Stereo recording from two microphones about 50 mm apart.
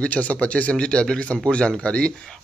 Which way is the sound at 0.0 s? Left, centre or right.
Left.